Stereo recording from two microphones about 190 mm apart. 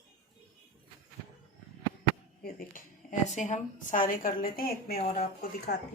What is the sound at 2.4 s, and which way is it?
A woman's voice, 45° left (ahead or behind).